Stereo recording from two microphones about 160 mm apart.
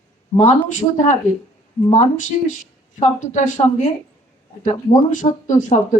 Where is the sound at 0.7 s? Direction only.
50° left (ahead or behind).